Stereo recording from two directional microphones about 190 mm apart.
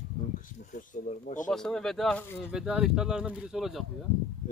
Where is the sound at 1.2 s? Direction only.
40° left (ahead or behind).